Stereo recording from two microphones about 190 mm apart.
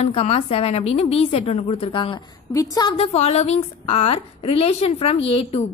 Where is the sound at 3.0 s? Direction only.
35° left (ahead or behind).